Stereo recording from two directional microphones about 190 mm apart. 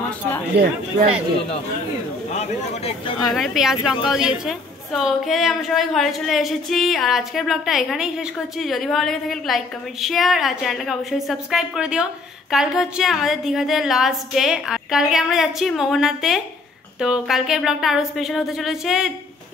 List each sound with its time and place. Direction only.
0.5 s speech: 60° right (ahead or behind)
2.3 s speech: 35° left (ahead or behind)
3.3 s speech: centre (ahead or behind)